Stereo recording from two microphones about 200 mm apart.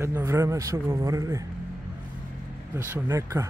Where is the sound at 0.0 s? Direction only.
15° right (ahead or behind).